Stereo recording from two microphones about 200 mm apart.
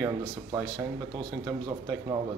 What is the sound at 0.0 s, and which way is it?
Speech, 10° right (ahead or behind).